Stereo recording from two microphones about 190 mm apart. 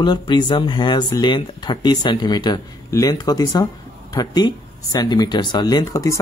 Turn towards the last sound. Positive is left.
turn(degrees=20)  # may be behind; listen again after turning